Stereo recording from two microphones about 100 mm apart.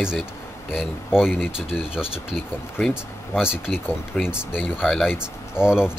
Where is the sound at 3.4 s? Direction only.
5° right (ahead or behind).